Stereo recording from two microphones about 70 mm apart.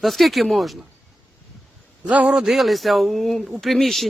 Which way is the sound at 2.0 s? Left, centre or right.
Centre.